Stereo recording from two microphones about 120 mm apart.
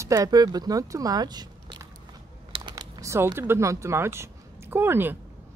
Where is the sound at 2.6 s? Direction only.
40° right (ahead or behind).